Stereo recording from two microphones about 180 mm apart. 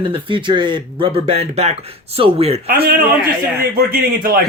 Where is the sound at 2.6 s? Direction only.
60° right (ahead or behind).